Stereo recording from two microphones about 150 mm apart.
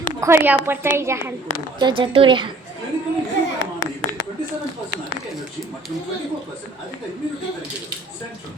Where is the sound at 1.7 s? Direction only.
30° right (ahead or behind).